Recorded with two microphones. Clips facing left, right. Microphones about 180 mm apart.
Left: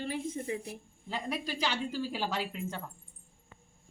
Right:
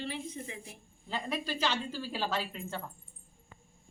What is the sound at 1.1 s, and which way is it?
A woman's voice, 10° left (ahead or behind).